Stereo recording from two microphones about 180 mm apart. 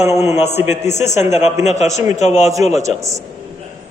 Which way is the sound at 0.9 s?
40° left (ahead or behind).